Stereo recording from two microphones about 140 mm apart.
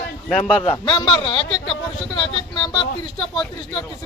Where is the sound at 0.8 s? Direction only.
35° left (ahead or behind).